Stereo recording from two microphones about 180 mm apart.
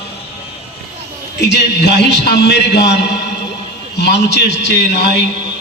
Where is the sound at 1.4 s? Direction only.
70° left (ahead or behind).